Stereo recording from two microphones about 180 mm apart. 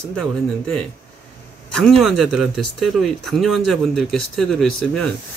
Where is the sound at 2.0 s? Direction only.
Centre (ahead or behind).